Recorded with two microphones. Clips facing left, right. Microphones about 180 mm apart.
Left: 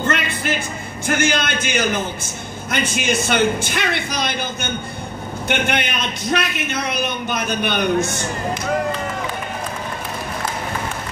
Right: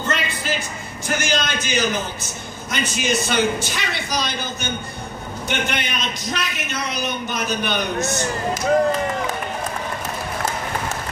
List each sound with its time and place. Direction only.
0.0 s music: 60° left (ahead or behind)
1.0 s a man's voice: 55° left (ahead or behind)